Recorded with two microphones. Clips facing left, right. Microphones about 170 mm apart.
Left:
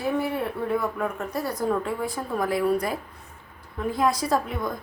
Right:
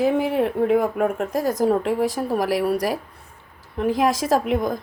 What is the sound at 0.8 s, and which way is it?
Speech, 60° right (ahead or behind).